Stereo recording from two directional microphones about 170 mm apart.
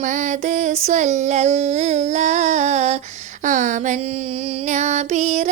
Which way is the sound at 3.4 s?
50° right (ahead or behind).